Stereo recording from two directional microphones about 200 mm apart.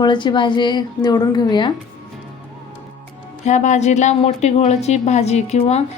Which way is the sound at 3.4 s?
35° left (ahead or behind).